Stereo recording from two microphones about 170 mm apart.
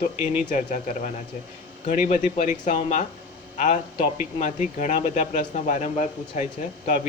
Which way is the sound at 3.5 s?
45° left (ahead or behind).